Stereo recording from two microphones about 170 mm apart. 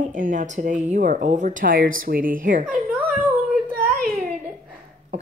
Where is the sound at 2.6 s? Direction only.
5° right (ahead or behind).